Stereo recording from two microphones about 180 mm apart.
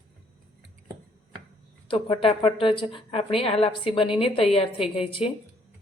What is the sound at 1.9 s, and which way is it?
A woman's voice, 30° left (ahead or behind).